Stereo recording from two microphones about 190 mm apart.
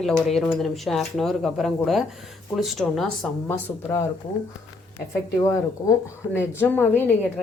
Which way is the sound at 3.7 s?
15° left (ahead or behind).